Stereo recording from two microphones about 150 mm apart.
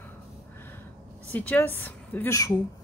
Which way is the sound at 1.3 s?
10° left (ahead or behind).